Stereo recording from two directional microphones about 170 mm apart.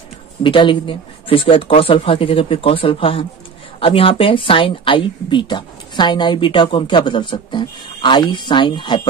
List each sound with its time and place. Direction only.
0.4 s speech: 30° left (ahead or behind)